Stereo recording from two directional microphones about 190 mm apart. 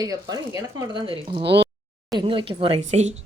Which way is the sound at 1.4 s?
65° right (ahead or behind).